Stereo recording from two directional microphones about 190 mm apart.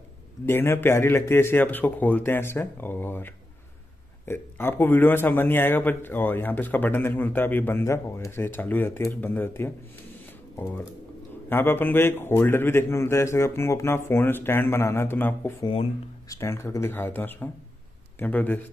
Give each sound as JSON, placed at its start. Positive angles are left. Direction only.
{"t": 0.5, "sound": "a man's voice", "side_deg": 10}
{"t": 15.6, "sound": "speech", "side_deg": 30}
{"t": 16.3, "sound": "a man's voice", "side_deg": 15}